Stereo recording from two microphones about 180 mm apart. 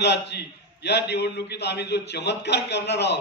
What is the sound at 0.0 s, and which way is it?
A man's voice, 70° left (ahead or behind).